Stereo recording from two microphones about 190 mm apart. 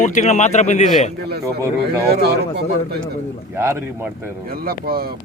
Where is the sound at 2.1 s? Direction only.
60° right (ahead or behind).